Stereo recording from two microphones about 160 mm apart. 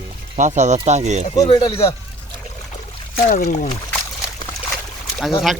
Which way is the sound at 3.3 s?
50° left (ahead or behind).